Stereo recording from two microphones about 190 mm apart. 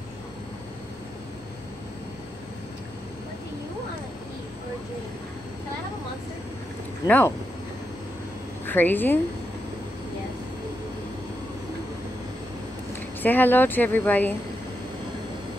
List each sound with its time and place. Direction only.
7.1 s speech: 10° left (ahead or behind)
8.6 s a woman's voice: 10° left (ahead or behind)
13.2 s speech: 10° left (ahead or behind)